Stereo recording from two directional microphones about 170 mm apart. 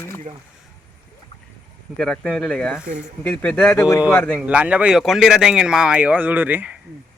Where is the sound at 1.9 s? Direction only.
5° left (ahead or behind).